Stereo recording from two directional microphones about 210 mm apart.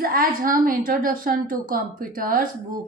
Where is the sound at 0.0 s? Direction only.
40° right (ahead or behind).